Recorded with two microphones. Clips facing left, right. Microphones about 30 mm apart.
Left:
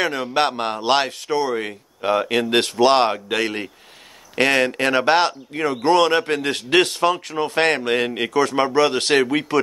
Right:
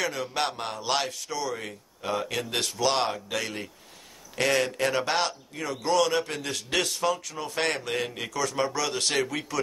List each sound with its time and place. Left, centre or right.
0.0 s speech: left